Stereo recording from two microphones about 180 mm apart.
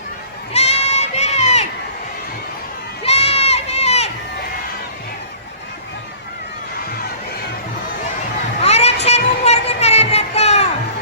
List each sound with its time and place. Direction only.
0.5 s crowd: 35° left (ahead or behind)
3.0 s crowd: 35° left (ahead or behind)
8.6 s a sound: 35° left (ahead or behind)